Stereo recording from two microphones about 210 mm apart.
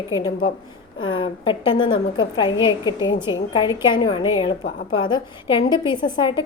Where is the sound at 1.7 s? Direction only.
75° left (ahead or behind).